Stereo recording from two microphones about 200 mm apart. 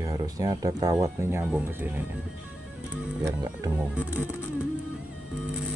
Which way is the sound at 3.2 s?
15° right (ahead or behind).